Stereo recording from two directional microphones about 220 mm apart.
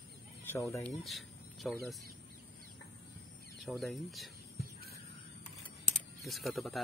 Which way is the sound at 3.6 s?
Centre (ahead or behind).